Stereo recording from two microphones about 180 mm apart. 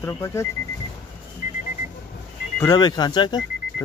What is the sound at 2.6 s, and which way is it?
Speech, 25° left (ahead or behind).